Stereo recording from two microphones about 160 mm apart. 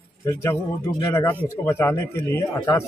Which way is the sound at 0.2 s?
15° left (ahead or behind).